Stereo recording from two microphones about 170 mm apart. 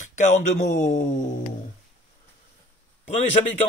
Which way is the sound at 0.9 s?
45° left (ahead or behind).